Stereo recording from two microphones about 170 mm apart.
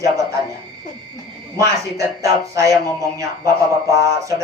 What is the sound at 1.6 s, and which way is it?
Speech, 20° right (ahead or behind).